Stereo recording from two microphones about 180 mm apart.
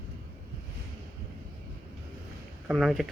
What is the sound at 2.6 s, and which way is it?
Speech, centre (ahead or behind).